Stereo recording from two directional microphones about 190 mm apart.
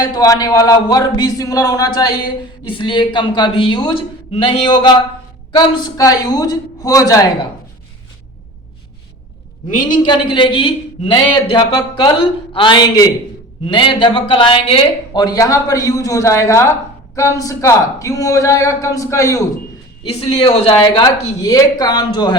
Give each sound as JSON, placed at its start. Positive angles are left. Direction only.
{"t": 0.0, "sound": "speech", "side_deg": 20}
{"t": 9.7, "sound": "a man's voice", "side_deg": 20}
{"t": 20.1, "sound": "speech", "side_deg": 30}